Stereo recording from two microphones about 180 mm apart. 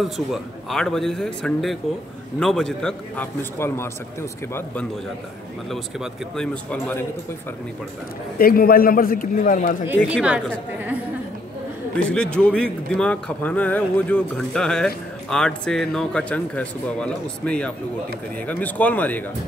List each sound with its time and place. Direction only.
0.0 s a man's voice: centre (ahead or behind)
5.7 s speech: centre (ahead or behind)
8.4 s a man's voice: 55° left (ahead or behind)
10.1 s a woman's voice: 5° right (ahead or behind)
12.0 s a man's voice: 5° left (ahead or behind)